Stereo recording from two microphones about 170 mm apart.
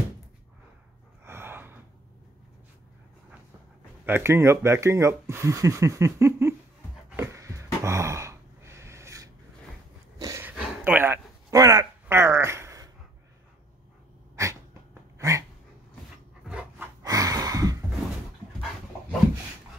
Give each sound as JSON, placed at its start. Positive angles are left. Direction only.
{"t": 1.2, "sound": "gasp", "side_deg": -15}
{"t": 4.0, "sound": "speech", "side_deg": -15}
{"t": 7.2, "sound": "a sound", "side_deg": -15}
{"t": 14.3, "sound": "dog", "side_deg": -20}
{"t": 16.4, "sound": "rub", "side_deg": -10}
{"t": 17.0, "sound": "gasp", "side_deg": -20}